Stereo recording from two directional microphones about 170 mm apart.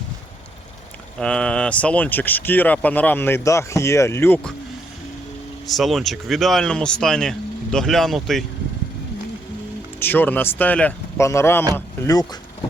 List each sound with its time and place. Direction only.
1.2 s speech: 5° left (ahead or behind)
5.6 s speech: centre (ahead or behind)
10.0 s speech: 10° left (ahead or behind)